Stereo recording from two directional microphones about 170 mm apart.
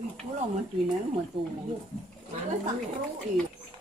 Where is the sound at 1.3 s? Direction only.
30° right (ahead or behind).